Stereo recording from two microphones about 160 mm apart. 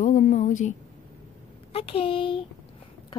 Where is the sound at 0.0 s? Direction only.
50° left (ahead or behind).